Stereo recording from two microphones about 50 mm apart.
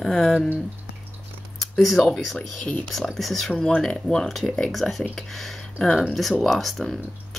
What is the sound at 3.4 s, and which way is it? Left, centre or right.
Speech, centre.